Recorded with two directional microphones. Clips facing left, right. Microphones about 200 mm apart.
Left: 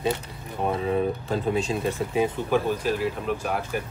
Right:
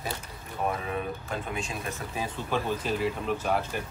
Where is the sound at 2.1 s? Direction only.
20° left (ahead or behind).